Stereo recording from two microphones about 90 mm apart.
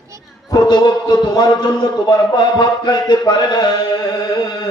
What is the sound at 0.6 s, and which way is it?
A man's voice, 50° left (ahead or behind).